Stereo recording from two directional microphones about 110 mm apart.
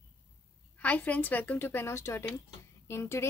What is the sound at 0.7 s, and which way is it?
Speech, 15° left (ahead or behind).